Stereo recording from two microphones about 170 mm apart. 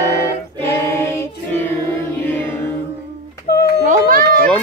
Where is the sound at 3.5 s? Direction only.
70° left (ahead or behind).